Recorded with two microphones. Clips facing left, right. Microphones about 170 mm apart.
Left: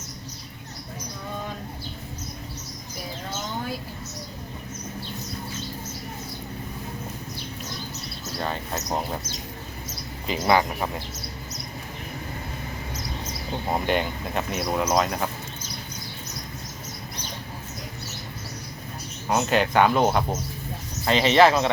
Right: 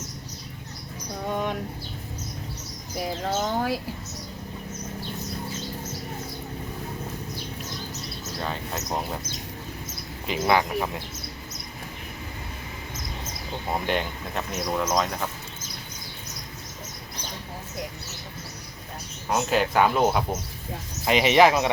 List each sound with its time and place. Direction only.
1.3 s a sound: 80° right
3.2 s a sound: 90° right
8.4 s speech: centre (ahead or behind)
10.2 s speech: centre (ahead or behind)
13.8 s speech: centre (ahead or behind)
19.3 s speech: 5° right (ahead or behind)